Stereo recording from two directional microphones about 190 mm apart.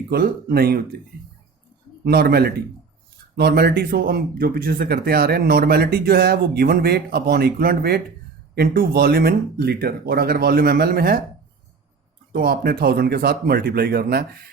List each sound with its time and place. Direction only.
0.1 s speech: 55° right (ahead or behind)
2.0 s speech: 55° right (ahead or behind)
12.3 s speech: 50° right (ahead or behind)